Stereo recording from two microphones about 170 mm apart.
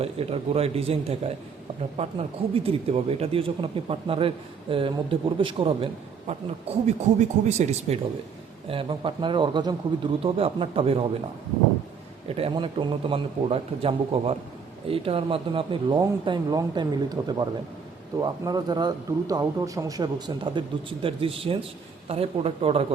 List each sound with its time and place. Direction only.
0.0 s a man's voice: 35° right (ahead or behind)
12.3 s a man's voice: 35° right (ahead or behind)